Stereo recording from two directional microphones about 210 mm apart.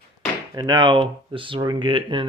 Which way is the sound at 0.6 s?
20° right (ahead or behind).